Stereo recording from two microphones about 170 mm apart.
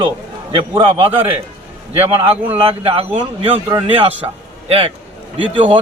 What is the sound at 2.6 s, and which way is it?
A man's voice, 35° right (ahead or behind).